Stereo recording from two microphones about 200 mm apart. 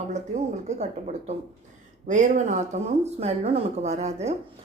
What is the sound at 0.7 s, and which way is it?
A woman's voice, 35° right (ahead or behind).